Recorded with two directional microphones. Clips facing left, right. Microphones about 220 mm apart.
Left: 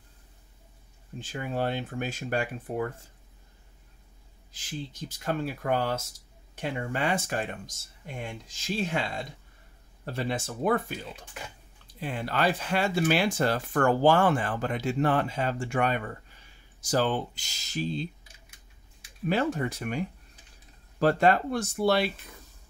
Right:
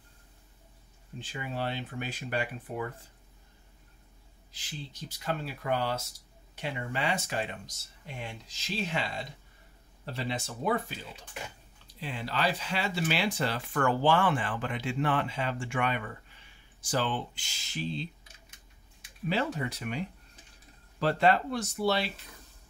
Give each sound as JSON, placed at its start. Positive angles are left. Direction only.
{"t": 1.2, "sound": "speech", "side_deg": 45}
{"t": 4.5, "sound": "speech", "side_deg": 50}
{"t": 12.0, "sound": "speech", "side_deg": 50}
{"t": 19.2, "sound": "speech", "side_deg": 50}